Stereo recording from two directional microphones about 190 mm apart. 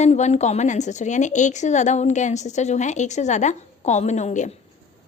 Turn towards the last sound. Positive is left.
turn(degrees=40)  # may be behind; listen again after turning